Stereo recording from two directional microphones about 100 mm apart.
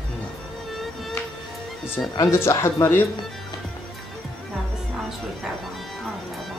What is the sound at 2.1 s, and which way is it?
Speech, 30° left (ahead or behind).